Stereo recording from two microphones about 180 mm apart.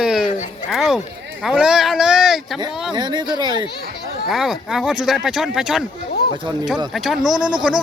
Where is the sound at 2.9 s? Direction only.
25° right (ahead or behind).